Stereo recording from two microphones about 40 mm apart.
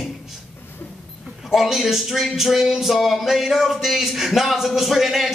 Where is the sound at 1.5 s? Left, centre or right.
Centre.